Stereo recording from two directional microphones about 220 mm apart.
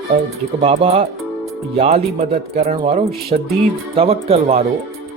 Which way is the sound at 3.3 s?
35° right (ahead or behind).